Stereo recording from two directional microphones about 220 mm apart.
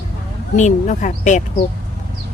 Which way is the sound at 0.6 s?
35° left (ahead or behind).